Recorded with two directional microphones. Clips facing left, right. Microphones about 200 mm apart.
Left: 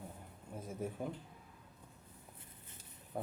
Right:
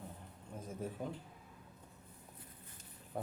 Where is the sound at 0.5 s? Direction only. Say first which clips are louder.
Left 1 dB; 10° left (ahead or behind).